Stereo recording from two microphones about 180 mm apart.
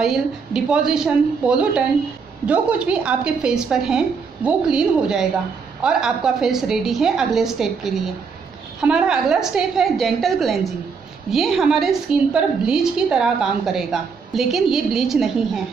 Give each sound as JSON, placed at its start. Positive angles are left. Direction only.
{"t": 0.0, "sound": "a woman's voice", "side_deg": 0}